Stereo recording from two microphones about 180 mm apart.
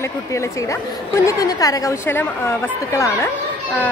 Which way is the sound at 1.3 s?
20° left (ahead or behind).